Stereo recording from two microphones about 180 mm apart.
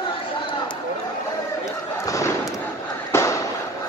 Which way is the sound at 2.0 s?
15° left (ahead or behind).